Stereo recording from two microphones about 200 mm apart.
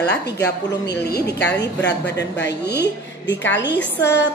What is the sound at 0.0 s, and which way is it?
A woman's voice, 55° left (ahead or behind).